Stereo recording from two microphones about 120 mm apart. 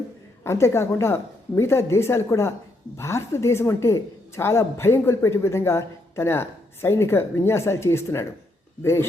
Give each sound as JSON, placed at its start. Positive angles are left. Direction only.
{"t": 0.4, "sound": "a woman's voice", "side_deg": 20}